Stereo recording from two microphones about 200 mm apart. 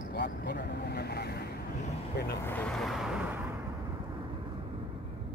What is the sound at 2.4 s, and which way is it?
Vehicle, 5° left (ahead or behind).